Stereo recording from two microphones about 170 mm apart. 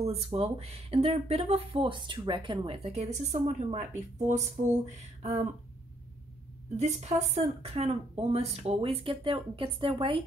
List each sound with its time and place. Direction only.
0.0 s speech: 35° right (ahead or behind)
6.8 s speech: 45° right (ahead or behind)